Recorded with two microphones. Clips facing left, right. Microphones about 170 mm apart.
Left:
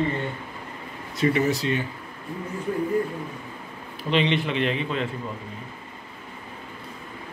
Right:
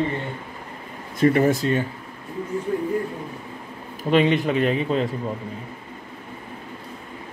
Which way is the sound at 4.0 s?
45° right (ahead or behind).